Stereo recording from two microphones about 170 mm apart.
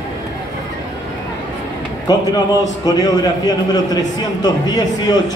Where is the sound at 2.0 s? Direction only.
20° left (ahead or behind).